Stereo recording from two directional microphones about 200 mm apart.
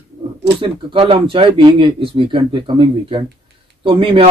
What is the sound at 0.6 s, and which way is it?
Speech, 25° right (ahead or behind).